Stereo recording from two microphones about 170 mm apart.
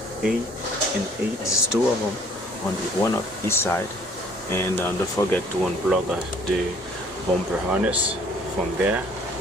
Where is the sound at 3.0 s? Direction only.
15° left (ahead or behind).